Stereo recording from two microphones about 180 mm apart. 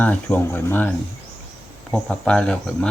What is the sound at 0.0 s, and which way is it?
Speech, 10° left (ahead or behind).